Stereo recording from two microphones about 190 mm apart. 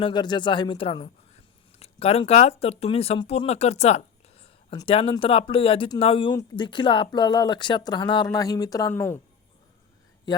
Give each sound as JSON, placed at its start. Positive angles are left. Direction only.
{"t": 0.0, "sound": "speech", "side_deg": 25}